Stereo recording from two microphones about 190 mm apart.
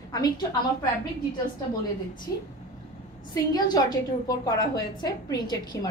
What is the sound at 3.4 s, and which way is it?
A woman's voice, 20° left (ahead or behind).